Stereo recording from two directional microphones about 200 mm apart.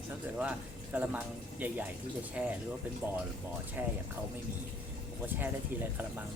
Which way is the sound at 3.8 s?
10° right (ahead or behind).